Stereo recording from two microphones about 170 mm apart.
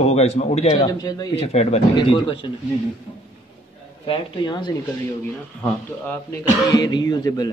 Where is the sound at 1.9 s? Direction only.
30° left (ahead or behind).